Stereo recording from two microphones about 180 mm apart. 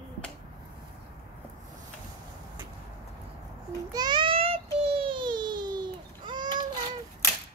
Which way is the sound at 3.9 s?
25° right (ahead or behind).